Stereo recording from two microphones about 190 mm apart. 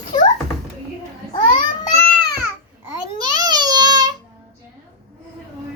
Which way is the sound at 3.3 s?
20° right (ahead or behind).